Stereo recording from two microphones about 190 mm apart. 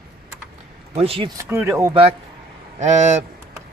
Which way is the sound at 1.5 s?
15° right (ahead or behind).